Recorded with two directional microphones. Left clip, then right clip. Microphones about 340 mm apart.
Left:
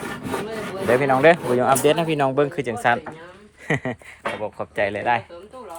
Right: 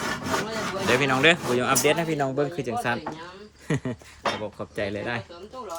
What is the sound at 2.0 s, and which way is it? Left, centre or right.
Speech, centre.